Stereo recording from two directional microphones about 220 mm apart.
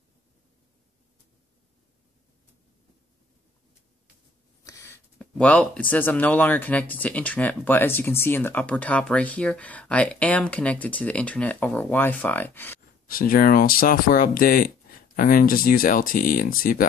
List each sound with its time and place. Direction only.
4.6 s speech: 15° left (ahead or behind)
13.1 s speech: 40° left (ahead or behind)